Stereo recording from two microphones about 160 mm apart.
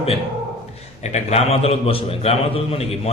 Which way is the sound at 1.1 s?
40° left (ahead or behind).